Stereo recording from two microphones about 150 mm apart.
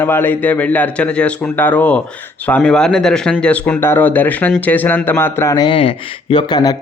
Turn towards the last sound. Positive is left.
turn(degrees=30)  # may be behind; listen again after turning